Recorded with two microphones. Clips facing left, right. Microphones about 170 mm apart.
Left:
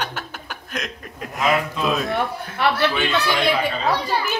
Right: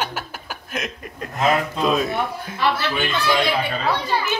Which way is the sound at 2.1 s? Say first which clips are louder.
Left 1 dB; 65° left (ahead or behind).